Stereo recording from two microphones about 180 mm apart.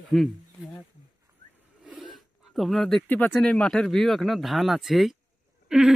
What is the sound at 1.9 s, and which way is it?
Speech, centre (ahead or behind).